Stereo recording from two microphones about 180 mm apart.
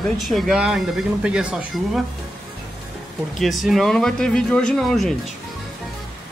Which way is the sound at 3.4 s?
Centre (ahead or behind).